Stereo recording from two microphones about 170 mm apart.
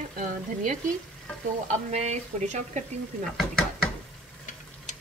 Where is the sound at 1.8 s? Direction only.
40° right (ahead or behind).